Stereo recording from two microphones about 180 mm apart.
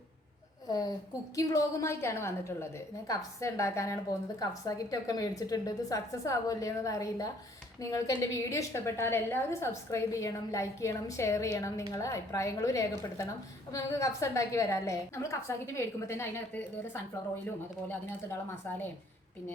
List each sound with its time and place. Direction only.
0.7 s a woman's voice: 20° left (ahead or behind)